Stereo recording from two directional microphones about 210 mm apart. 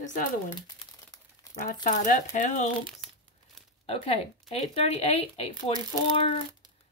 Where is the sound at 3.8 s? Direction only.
25° left (ahead or behind).